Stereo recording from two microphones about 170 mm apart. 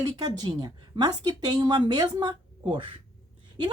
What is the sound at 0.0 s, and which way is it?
A woman's voice, 25° right (ahead or behind).